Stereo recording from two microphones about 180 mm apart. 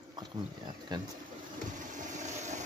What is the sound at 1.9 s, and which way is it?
Vehicle, 40° right (ahead or behind).